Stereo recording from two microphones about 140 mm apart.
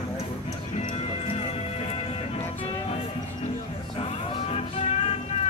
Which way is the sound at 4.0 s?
45° left (ahead or behind).